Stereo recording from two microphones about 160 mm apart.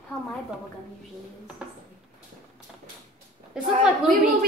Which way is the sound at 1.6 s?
5° right (ahead or behind).